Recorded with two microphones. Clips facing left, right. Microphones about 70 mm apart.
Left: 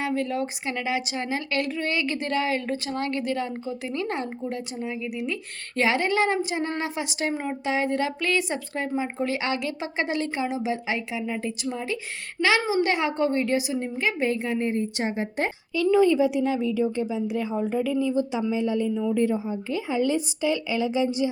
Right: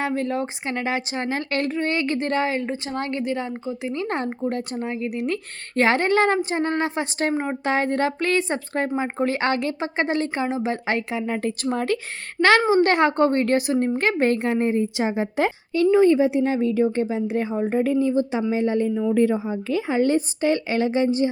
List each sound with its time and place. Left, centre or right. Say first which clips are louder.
0.0 s speech: right 2 dB; right
10.8 s a woman's voice: right 4 dB; right
15.9 s speech: right 3 dB; right
19.1 s a woman's voice: right 4 dB; right
20.1 s speech: right 4 dB; right